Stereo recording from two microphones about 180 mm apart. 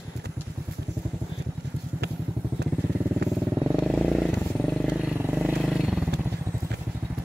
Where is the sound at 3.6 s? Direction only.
Centre (ahead or behind).